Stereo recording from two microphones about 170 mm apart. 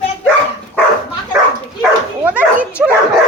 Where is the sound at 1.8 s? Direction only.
10° right (ahead or behind).